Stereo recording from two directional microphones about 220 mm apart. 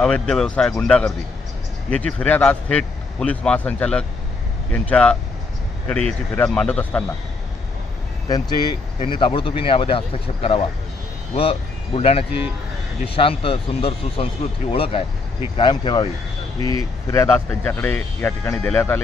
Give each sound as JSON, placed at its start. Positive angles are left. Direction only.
{"t": 0.0, "sound": "a man's voice", "side_deg": 5}
{"t": 8.3, "sound": "speech", "side_deg": 20}